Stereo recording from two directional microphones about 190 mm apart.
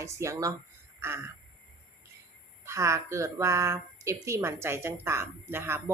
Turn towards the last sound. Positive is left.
turn(degrees=-15)  # may be behind; listen again after turning